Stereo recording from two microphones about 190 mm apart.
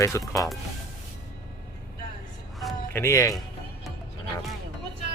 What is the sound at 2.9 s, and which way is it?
Speech, 15° left (ahead or behind).